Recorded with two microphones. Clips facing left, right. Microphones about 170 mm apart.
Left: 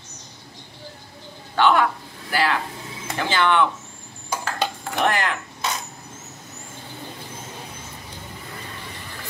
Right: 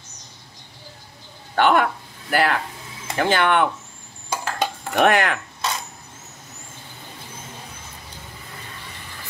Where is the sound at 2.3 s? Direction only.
50° right (ahead or behind).